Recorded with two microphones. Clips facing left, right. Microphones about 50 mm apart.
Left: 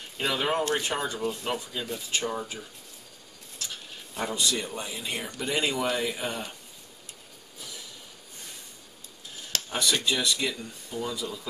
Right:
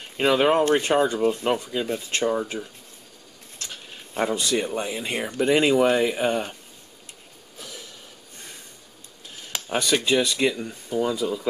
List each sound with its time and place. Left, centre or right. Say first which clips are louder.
0.2 s speech: right 8 dB; right
4.1 s speech: right 6 dB; right
9.7 s speech: right 6 dB; right